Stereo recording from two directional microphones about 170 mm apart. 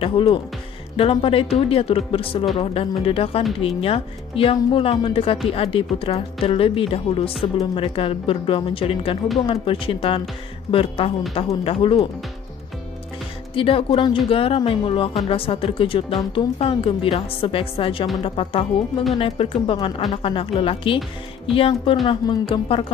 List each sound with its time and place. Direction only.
0.0 s a woman's voice: 30° left (ahead or behind)
13.6 s a woman's voice: 30° left (ahead or behind)